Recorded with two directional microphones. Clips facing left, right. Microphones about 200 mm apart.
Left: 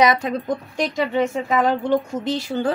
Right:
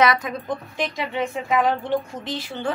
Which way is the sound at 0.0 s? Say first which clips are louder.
Left 2 dB; 25° left (ahead or behind).